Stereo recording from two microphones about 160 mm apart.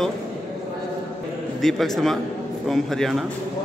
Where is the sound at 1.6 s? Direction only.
Centre (ahead or behind).